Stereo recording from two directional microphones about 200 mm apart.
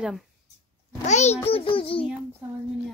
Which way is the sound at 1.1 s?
35° left (ahead or behind).